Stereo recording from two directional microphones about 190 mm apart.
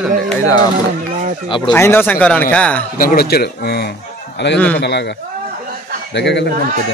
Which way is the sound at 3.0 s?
50° left (ahead or behind).